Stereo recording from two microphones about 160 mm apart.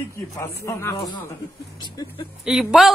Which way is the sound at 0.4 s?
15° left (ahead or behind).